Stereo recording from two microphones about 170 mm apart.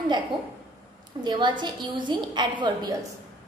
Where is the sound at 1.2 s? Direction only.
25° right (ahead or behind).